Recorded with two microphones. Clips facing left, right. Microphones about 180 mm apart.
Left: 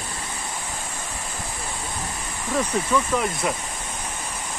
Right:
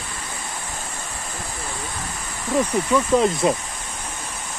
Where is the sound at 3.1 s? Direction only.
25° right (ahead or behind).